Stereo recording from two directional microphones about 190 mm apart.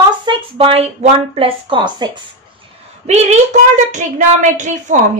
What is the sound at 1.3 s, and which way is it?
Speech, 30° right (ahead or behind).